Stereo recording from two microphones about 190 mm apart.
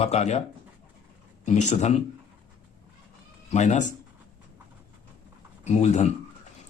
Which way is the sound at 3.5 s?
40° left (ahead or behind).